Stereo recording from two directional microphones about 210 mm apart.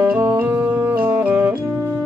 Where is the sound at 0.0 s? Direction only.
10° right (ahead or behind).